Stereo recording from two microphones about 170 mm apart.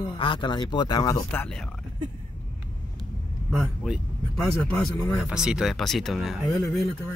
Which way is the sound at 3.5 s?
5° right (ahead or behind).